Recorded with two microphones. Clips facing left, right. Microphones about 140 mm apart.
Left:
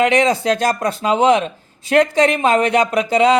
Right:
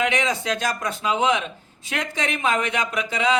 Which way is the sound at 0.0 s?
35° left (ahead or behind).